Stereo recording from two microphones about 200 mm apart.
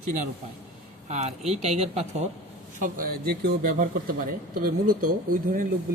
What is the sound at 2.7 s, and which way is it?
Speech, 40° right (ahead or behind).